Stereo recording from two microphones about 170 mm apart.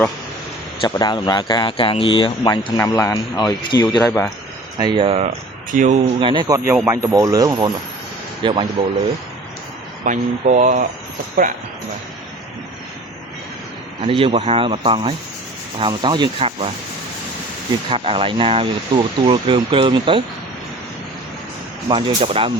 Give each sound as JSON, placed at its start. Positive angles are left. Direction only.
{"t": 0.8, "sound": "speech", "side_deg": 20}
{"t": 2.7, "sound": "speech", "side_deg": 15}
{"t": 4.8, "sound": "speech", "side_deg": -30}
{"t": 5.7, "sound": "speech", "side_deg": -45}
{"t": 6.1, "sound": "sanding", "side_deg": -30}
{"t": 8.8, "sound": "speech", "side_deg": -35}
{"t": 10.0, "sound": "speech", "side_deg": -50}
{"t": 14.0, "sound": "speech", "side_deg": -30}
{"t": 15.8, "sound": "sanding", "side_deg": -25}
{"t": 17.8, "sound": "speech", "side_deg": -35}
{"t": 21.8, "sound": "speech", "side_deg": -30}